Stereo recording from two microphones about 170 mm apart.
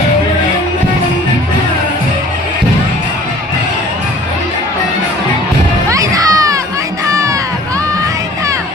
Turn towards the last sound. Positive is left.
turn(degrees=-20)  # may be behind; listen again after turning